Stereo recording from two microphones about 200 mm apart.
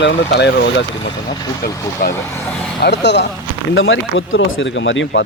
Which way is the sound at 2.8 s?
60° left (ahead or behind).